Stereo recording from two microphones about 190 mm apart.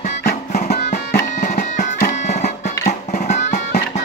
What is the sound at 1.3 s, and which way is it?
Music, 40° left (ahead or behind).